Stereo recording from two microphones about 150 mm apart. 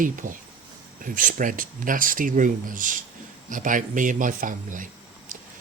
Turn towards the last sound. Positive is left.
turn(degrees=-60)  # may be behind; listen again after turning